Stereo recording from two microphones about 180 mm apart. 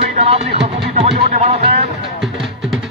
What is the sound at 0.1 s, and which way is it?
Music, 35° right (ahead or behind).